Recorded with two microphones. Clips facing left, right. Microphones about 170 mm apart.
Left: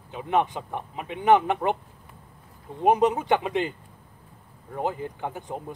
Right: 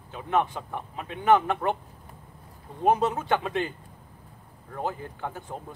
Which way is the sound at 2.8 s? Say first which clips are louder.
Left 3 dB; 15° left (ahead or behind).